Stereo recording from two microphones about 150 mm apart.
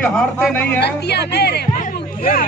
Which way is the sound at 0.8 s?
90° left.